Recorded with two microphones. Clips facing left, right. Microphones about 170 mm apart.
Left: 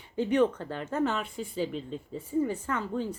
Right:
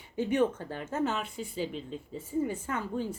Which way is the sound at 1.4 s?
45° left (ahead or behind).